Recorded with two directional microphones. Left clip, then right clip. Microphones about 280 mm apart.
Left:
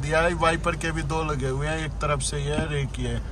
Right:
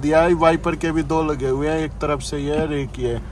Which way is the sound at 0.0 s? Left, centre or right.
Centre.